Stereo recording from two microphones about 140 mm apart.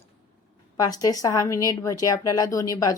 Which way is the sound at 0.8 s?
25° left (ahead or behind).